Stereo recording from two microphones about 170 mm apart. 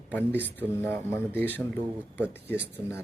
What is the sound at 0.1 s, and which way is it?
Speech, 10° left (ahead or behind).